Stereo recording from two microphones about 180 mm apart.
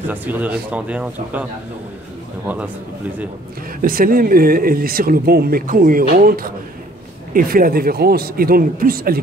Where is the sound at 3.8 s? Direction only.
55° right (ahead or behind).